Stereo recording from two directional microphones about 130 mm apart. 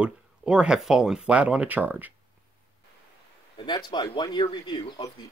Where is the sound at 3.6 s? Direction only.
35° left (ahead or behind).